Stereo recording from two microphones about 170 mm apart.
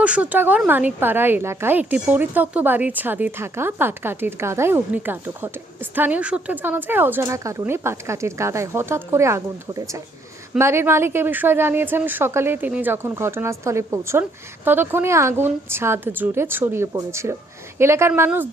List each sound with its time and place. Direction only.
0.0 s a woman's voice: 10° right (ahead or behind)